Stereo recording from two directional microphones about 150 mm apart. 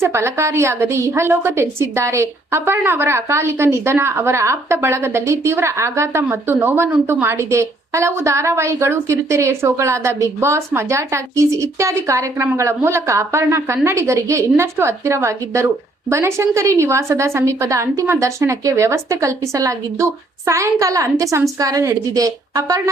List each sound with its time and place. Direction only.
0.0 s a woman's voice: 15° right (ahead or behind)